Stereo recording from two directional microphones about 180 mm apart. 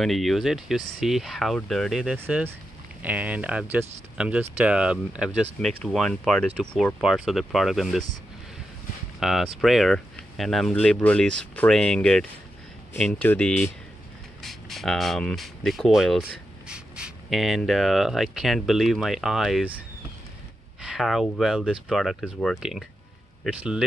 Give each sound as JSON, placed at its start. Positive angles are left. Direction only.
{"t": 0.0, "sound": "speech", "side_deg": 0}
{"t": 9.2, "sound": "speech", "side_deg": 0}
{"t": 20.8, "sound": "speech", "side_deg": 0}